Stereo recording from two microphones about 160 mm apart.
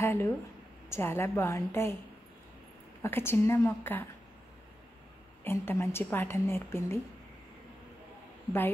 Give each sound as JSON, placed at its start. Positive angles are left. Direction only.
{"t": 0.0, "sound": "a woman's voice", "side_deg": 15}
{"t": 3.0, "sound": "a woman's voice", "side_deg": 15}
{"t": 5.4, "sound": "a woman's voice", "side_deg": 15}